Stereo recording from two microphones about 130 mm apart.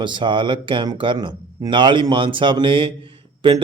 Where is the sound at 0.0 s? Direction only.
35° right (ahead or behind).